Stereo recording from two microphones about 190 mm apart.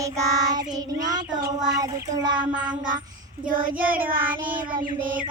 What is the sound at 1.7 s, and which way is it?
Child singing, 20° right (ahead or behind).